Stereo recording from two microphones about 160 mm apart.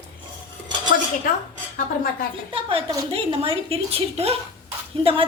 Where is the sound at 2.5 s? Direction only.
35° right (ahead or behind).